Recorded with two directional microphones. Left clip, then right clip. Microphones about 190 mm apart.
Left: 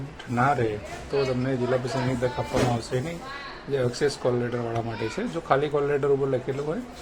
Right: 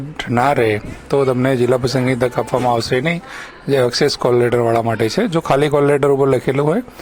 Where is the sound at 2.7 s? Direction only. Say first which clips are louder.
Right 13 dB; 45° right (ahead or behind).